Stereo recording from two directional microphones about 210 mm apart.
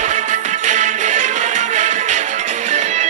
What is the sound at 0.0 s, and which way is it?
Music, 35° right (ahead or behind).